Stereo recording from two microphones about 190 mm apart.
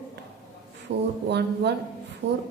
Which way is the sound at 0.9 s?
65° right (ahead or behind).